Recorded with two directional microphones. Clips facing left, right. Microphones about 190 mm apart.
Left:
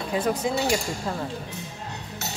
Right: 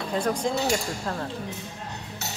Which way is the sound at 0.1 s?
5° left (ahead or behind).